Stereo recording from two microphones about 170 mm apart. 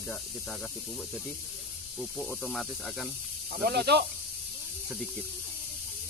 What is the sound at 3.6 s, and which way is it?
Speech, 75° right (ahead or behind).